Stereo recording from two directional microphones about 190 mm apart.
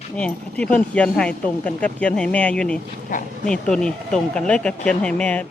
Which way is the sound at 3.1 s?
45° left (ahead or behind).